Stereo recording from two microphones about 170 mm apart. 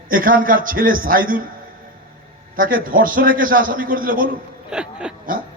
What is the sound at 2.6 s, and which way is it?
A man's voice, 55° right (ahead or behind).